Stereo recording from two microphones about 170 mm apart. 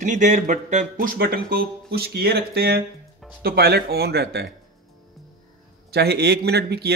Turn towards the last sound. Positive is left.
turn(degrees=-70)  # may be behind; listen again after turning